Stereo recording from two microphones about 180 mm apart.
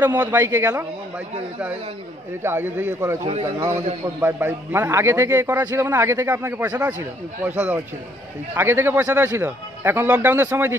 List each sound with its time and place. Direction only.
0.0 s a man's voice: 15° right (ahead or behind)
2.4 s a man's voice: 10° right (ahead or behind)
4.2 s a man's voice: 10° right (ahead or behind)